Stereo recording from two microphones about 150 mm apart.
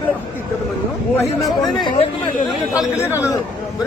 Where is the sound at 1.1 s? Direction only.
20° left (ahead or behind).